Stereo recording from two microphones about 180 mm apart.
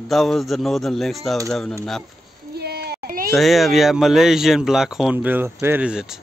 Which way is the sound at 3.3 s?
Centre (ahead or behind).